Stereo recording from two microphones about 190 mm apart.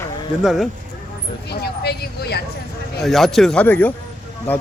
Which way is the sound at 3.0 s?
Centre (ahead or behind).